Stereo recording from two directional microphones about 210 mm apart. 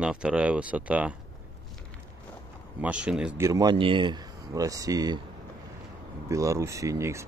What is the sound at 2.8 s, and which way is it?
Speech, 5° right (ahead or behind).